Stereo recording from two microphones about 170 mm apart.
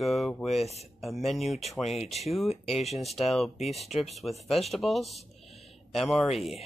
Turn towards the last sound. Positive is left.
turn(degrees=0)  # may be behind; listen again after turning